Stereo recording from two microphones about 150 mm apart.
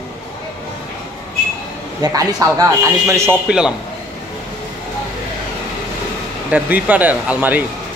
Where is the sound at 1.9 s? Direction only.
25° right (ahead or behind).